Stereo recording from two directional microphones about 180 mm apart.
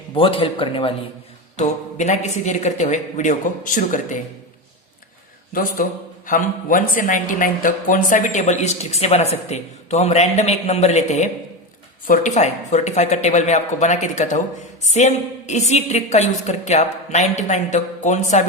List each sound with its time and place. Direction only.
0.1 s speech: 30° left (ahead or behind)
1.5 s speech: 40° left (ahead or behind)
5.8 s a man's voice: 50° left (ahead or behind)